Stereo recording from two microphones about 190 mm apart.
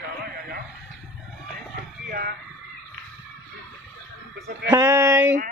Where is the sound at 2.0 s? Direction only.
55° right (ahead or behind).